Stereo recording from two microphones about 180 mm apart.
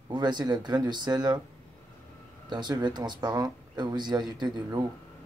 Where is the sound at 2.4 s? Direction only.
25° right (ahead or behind).